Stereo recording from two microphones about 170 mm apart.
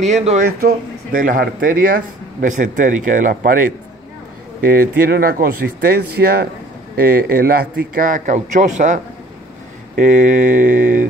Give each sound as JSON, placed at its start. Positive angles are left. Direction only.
{"t": 0.0, "sound": "speech", "side_deg": -40}
{"t": 0.5, "sound": "a man's voice", "side_deg": -65}